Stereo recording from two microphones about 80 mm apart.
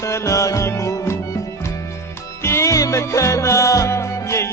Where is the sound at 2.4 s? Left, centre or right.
Left.